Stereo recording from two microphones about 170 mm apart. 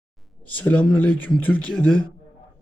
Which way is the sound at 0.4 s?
10° left (ahead or behind).